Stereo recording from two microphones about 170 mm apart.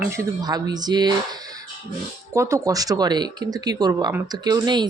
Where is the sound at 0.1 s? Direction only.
20° right (ahead or behind).